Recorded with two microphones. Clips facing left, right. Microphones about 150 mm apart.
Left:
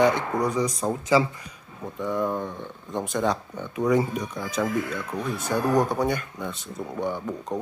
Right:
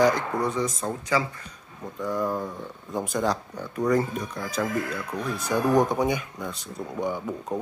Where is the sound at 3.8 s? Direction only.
10° left (ahead or behind).